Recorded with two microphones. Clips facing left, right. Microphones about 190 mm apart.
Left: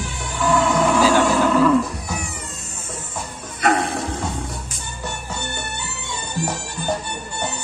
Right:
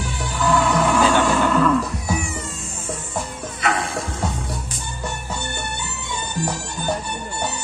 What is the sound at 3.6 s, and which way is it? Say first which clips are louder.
Music: left 4 dB; 40° left (ahead or behind).